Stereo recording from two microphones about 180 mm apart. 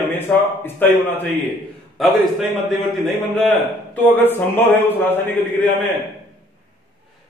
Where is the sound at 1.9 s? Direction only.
Centre (ahead or behind).